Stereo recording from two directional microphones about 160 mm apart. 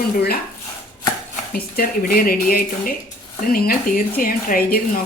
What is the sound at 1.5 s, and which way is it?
Speech, 70° left (ahead or behind).